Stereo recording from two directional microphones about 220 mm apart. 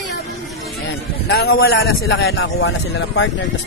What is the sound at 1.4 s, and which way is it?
Speech, 45° left (ahead or behind).